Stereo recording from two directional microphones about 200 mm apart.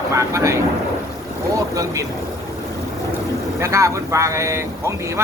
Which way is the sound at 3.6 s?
15° right (ahead or behind).